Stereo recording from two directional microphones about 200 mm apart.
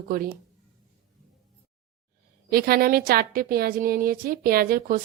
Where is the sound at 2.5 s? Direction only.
50° right (ahead or behind).